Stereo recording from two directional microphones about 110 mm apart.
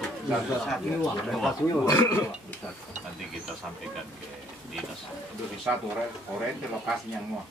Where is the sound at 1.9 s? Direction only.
25° left (ahead or behind).